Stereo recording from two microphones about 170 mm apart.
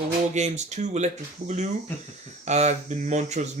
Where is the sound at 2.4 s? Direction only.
40° right (ahead or behind).